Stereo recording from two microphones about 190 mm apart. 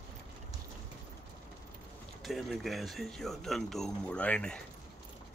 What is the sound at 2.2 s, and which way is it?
Speech, centre (ahead or behind).